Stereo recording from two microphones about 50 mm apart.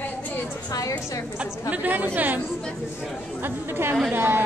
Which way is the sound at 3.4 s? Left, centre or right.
Right.